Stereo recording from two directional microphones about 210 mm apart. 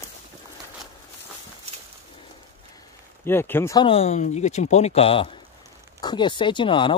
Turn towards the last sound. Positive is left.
turn(degrees=25)  # may be behind; listen again after turning